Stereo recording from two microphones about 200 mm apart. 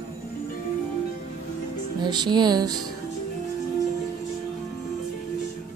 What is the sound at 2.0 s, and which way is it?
Music, 20° right (ahead or behind).